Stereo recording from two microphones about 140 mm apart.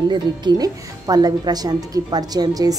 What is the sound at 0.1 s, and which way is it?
Speech, 30° right (ahead or behind).